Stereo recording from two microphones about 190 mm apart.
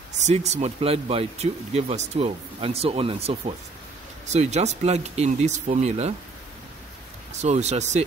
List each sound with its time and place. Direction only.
0.2 s speech: 35° right (ahead or behind)
7.4 s speech: 35° right (ahead or behind)